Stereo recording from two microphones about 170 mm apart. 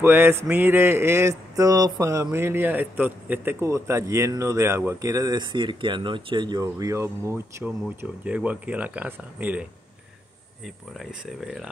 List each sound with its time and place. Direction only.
0.0 s a man's voice: 15° right (ahead or behind)